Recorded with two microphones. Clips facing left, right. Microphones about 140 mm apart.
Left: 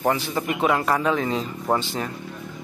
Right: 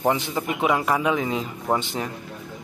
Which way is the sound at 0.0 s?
20° right (ahead or behind).